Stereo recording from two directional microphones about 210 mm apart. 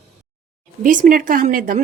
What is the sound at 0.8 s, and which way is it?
Speech, 40° right (ahead or behind).